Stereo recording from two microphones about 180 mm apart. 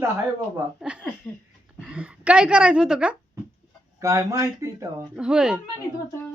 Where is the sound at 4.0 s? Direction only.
15° right (ahead or behind).